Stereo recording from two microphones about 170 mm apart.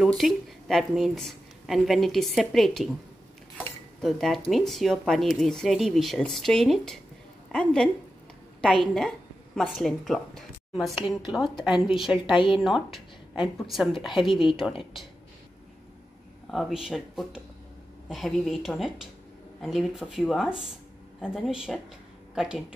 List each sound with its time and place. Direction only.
0.0 s a woman's voice: centre (ahead or behind)
4.0 s speech: centre (ahead or behind)
9.6 s speech: centre (ahead or behind)
16.4 s speech: centre (ahead or behind)